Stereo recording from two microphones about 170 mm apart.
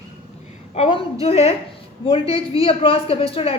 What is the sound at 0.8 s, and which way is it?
A woman's voice, 40° left (ahead or behind).